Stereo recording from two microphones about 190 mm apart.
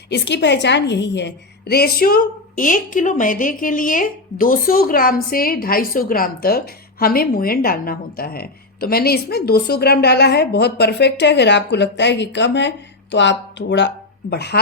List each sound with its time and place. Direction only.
0.1 s a woman's voice: 65° left (ahead or behind)